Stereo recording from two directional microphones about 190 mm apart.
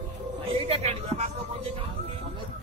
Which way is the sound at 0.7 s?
35° right (ahead or behind).